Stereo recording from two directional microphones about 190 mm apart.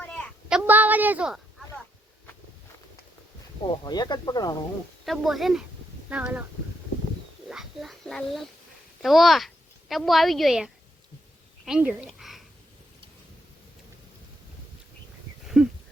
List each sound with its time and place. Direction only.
0.5 s a woman's voice: 10° right (ahead or behind)
3.6 s speech: 25° left (ahead or behind)
5.0 s a woman's voice: centre (ahead or behind)
7.5 s a sound: centre (ahead or behind)
9.0 s a woman's voice: centre (ahead or behind)
15.6 s a sound: centre (ahead or behind)